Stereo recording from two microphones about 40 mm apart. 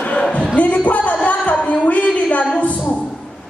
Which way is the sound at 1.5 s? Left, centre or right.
Left.